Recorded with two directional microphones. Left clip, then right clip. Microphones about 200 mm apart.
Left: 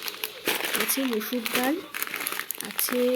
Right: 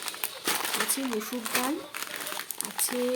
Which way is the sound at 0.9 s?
Centre (ahead or behind).